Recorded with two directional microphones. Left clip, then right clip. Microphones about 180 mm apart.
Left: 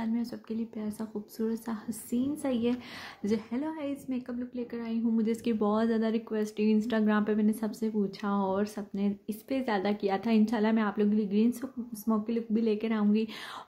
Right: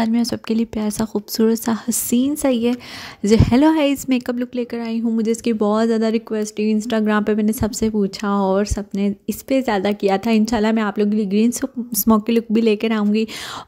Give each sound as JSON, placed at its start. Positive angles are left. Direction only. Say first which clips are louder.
{"t": 0.0, "sound": "a woman's voice", "louder": "right 15 dB", "side_deg": -50}
{"t": 11.9, "sound": "a woman's voice", "louder": "right 15 dB", "side_deg": -65}